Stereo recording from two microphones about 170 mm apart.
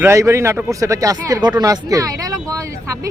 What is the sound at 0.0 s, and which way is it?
Speech, 15° right (ahead or behind).